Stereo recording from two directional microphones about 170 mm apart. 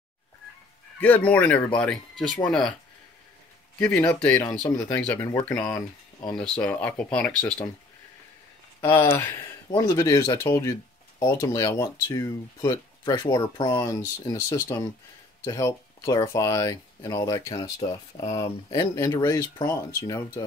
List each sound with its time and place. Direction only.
0.9 s speech: 10° left (ahead or behind)
3.8 s speech: 10° left (ahead or behind)
6.3 s speech: 5° left (ahead or behind)
8.8 s speech: 15° left (ahead or behind)